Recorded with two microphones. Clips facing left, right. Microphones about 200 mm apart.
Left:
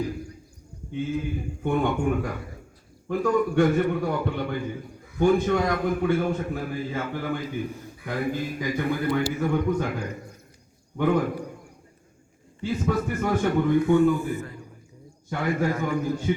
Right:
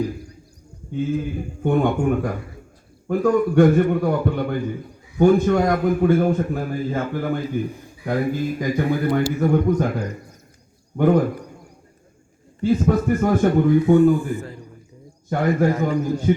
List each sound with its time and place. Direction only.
0.9 s a man's voice: 45° right (ahead or behind)
3.1 s a man's voice: 45° right (ahead or behind)
12.5 s a man's voice: 45° right (ahead or behind)
15.3 s a man's voice: 40° right (ahead or behind)